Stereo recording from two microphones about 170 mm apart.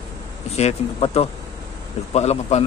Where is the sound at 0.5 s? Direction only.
35° left (ahead or behind).